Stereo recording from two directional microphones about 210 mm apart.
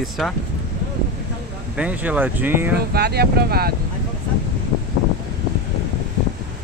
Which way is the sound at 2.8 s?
50° right (ahead or behind).